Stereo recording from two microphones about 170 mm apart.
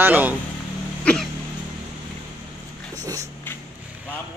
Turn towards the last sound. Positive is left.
turn(degrees=-20)  # may be behind; listen again after turning